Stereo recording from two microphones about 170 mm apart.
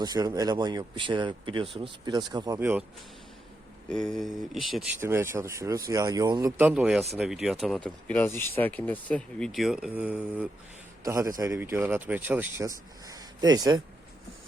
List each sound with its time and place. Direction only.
0.0 s speech: 25° right (ahead or behind)
2.6 s speech: 10° right (ahead or behind)
3.8 s speech: 5° left (ahead or behind)
4.9 s speech: 15° right (ahead or behind)
6.6 s speech: 10° right (ahead or behind)
11.0 s a man's voice: 20° right (ahead or behind)